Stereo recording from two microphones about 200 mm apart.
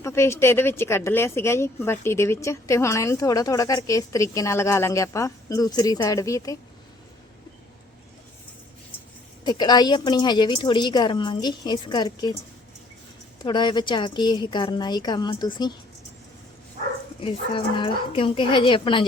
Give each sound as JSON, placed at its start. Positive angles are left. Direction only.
{"t": 0.0, "sound": "speech", "side_deg": 15}
{"t": 9.4, "sound": "a woman's voice", "side_deg": 20}
{"t": 13.4, "sound": "a woman's voice", "side_deg": 20}
{"t": 17.2, "sound": "a woman's voice", "side_deg": 25}